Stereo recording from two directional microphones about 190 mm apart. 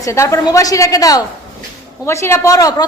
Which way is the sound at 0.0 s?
15° left (ahead or behind).